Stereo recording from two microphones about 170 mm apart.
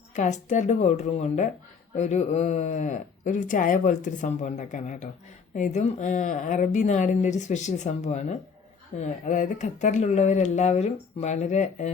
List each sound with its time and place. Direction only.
0.2 s speech: 45° left (ahead or behind)